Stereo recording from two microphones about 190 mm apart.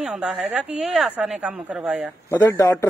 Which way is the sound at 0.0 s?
5° right (ahead or behind).